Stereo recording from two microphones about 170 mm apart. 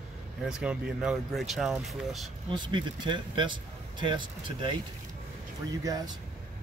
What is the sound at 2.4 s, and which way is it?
Speech, 25° right (ahead or behind).